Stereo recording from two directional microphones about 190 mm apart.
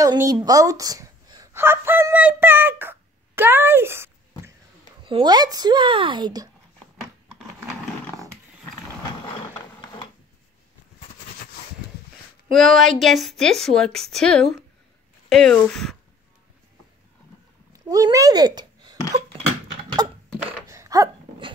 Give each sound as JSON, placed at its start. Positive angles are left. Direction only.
{"t": 0.0, "sound": "a woman's voice", "side_deg": -20}
{"t": 5.0, "sound": "speech", "side_deg": -25}
{"t": 12.5, "sound": "a woman's voice", "side_deg": 0}
{"t": 17.7, "sound": "speech", "side_deg": -20}
{"t": 20.6, "sound": "a sound", "side_deg": -15}